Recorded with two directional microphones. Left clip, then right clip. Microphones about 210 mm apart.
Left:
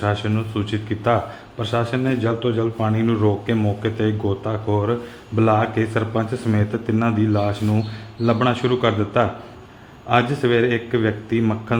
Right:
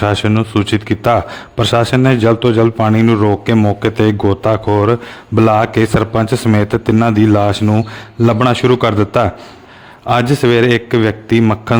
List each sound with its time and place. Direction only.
0.0 s speech: 50° right (ahead or behind)